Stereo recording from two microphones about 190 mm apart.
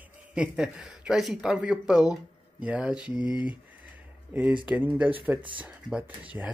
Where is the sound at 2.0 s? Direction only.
20° left (ahead or behind).